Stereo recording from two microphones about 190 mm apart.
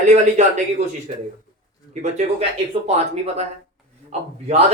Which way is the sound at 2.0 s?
35° right (ahead or behind).